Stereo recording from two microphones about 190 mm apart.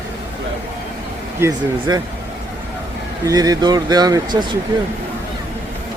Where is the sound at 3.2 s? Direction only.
20° right (ahead or behind).